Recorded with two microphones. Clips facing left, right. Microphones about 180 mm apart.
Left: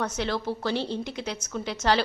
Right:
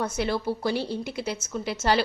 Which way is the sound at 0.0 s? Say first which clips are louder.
Right 2 dB; 10° right (ahead or behind).